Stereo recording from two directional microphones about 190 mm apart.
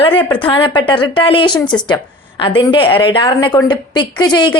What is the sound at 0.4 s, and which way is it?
A woman's voice, 25° left (ahead or behind).